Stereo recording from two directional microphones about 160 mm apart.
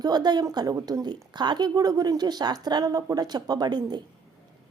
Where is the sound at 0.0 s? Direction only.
25° right (ahead or behind).